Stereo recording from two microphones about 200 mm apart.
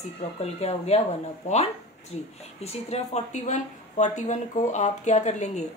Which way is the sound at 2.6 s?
30° left (ahead or behind).